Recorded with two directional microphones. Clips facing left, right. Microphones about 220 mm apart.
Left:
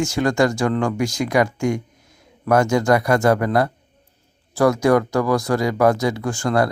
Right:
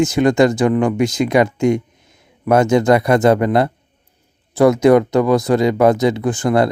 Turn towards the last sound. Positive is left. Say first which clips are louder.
# right 4 dB
turn(degrees=-20)  # may be behind; listen again after turning